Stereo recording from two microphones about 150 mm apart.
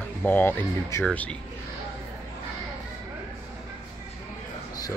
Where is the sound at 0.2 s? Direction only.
15° left (ahead or behind).